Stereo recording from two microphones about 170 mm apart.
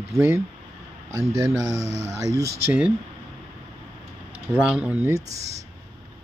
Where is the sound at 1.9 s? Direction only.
45° right (ahead or behind).